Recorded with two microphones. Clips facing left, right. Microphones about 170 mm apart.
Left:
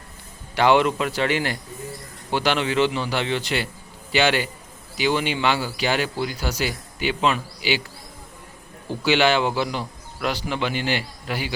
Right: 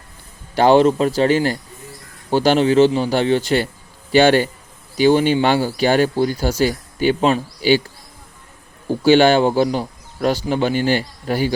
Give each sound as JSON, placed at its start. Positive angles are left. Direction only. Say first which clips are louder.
{"t": 0.5, "sound": "a man's voice", "louder": "right 6 dB", "side_deg": -40}
{"t": 9.0, "sound": "speech", "louder": "right 7 dB", "side_deg": -45}